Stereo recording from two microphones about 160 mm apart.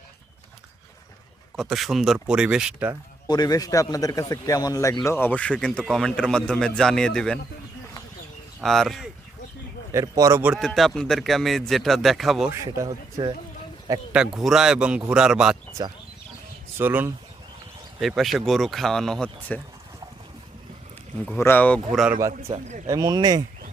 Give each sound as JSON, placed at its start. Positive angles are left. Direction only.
{"t": 1.5, "sound": "speech", "side_deg": 0}
{"t": 3.2, "sound": "a man's voice", "side_deg": 25}
{"t": 8.6, "sound": "speech", "side_deg": 0}
{"t": 9.9, "sound": "speech", "side_deg": -20}
{"t": 10.4, "sound": "speech", "side_deg": -5}
{"t": 12.6, "sound": "speech", "side_deg": -20}
{"t": 14.1, "sound": "speech", "side_deg": -5}
{"t": 15.8, "sound": "speech", "side_deg": -25}
{"t": 16.7, "sound": "speech", "side_deg": -10}
{"t": 18.0, "sound": "speech", "side_deg": 0}
{"t": 21.2, "sound": "a man's voice", "side_deg": 15}
{"t": 21.9, "sound": "speech", "side_deg": -5}
{"t": 22.3, "sound": "a man's voice", "side_deg": -40}
{"t": 22.9, "sound": "speech", "side_deg": -25}